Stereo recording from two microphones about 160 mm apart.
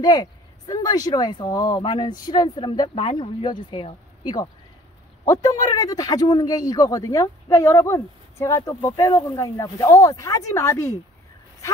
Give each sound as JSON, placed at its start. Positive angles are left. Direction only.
{"t": 0.0, "sound": "speech", "side_deg": 25}